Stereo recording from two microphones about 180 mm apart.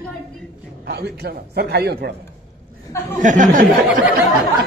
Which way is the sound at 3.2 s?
45° right (ahead or behind).